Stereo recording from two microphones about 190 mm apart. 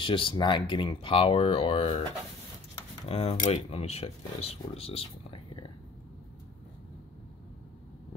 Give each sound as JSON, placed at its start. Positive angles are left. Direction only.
{"t": 0.0, "sound": "speech", "side_deg": 25}
{"t": 3.1, "sound": "speech", "side_deg": 30}